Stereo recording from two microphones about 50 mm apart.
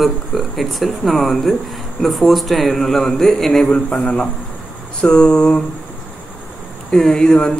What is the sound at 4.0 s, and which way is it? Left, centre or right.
A man's voice, centre.